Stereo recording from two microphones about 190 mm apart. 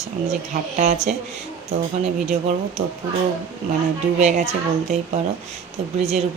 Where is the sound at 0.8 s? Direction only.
35° right (ahead or behind).